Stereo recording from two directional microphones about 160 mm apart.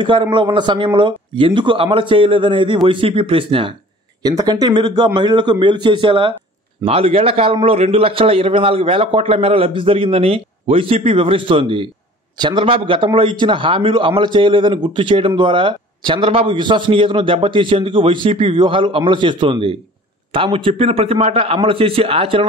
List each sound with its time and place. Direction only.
0.0 s a man's voice: 30° right (ahead or behind)